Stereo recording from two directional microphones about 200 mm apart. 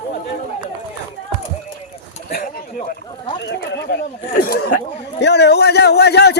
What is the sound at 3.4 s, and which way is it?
A man's voice, 60° left (ahead or behind).